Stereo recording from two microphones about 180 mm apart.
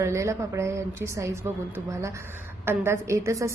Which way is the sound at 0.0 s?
15° right (ahead or behind).